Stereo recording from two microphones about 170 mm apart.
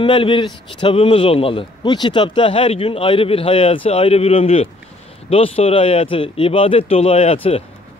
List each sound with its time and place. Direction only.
0.0 s speech: 30° left (ahead or behind)